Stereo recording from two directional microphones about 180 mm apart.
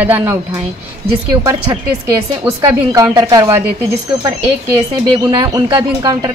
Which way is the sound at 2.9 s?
25° right (ahead or behind).